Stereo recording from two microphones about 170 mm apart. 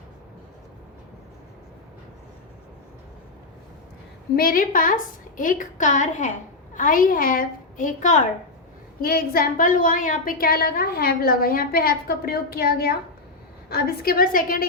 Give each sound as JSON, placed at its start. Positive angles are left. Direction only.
{"t": 4.4, "sound": "a woman's voice", "side_deg": 55}
{"t": 9.0, "sound": "a woman's voice", "side_deg": 60}